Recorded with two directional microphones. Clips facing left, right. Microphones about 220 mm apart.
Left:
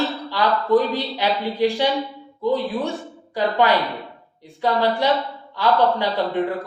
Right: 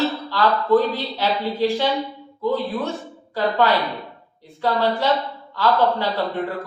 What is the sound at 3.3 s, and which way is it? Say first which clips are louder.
Speech: even; 15° left (ahead or behind).